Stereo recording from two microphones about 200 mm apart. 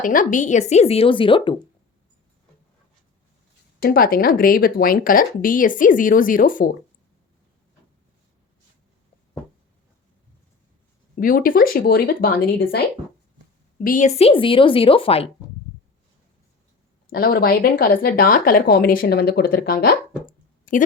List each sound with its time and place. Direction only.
0.0 s a woman's voice: 40° left (ahead or behind); by 1.5 s 25° left (ahead or behind)
3.8 s speech: 45° left (ahead or behind)
11.2 s speech: 45° left (ahead or behind)
13.7 s a woman's voice: 45° left (ahead or behind)
17.1 s speech: 50° left (ahead or behind)